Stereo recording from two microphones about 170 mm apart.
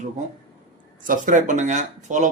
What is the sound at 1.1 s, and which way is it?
Speech, 50° right (ahead or behind).